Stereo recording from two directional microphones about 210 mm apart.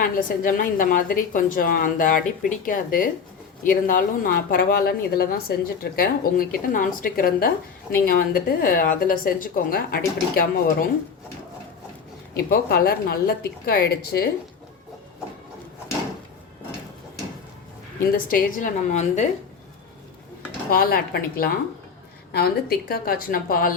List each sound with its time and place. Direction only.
0.0 s a woman's voice: 40° left (ahead or behind)
12.4 s a woman's voice: 45° left (ahead or behind)
18.3 s a woman's voice: 40° left (ahead or behind)
20.7 s a woman's voice: 45° left (ahead or behind)